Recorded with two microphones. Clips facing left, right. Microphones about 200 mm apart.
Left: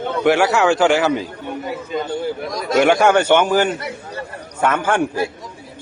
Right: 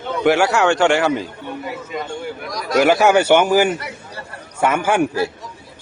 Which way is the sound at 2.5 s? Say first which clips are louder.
Left 3 dB; 25° left (ahead or behind).